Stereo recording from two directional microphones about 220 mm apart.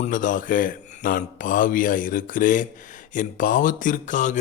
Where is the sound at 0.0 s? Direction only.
35° left (ahead or behind).